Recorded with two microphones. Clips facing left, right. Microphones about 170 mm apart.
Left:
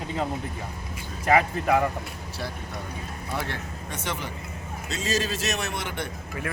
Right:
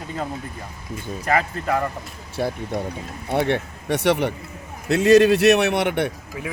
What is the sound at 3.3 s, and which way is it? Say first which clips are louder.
A man's voice: right 12 dB; 65° right (ahead or behind).